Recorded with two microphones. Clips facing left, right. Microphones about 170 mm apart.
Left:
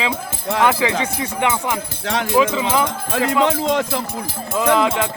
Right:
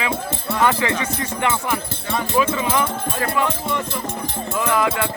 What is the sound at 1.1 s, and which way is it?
Speech, 15° left (ahead or behind).